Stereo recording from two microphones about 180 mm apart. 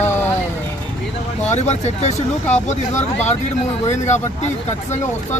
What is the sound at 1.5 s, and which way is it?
Speech, 40° left (ahead or behind).